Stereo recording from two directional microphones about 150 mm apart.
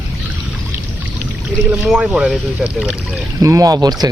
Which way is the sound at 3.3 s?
20° right (ahead or behind).